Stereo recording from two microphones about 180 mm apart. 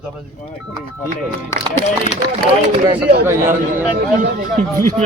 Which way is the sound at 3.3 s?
15° right (ahead or behind).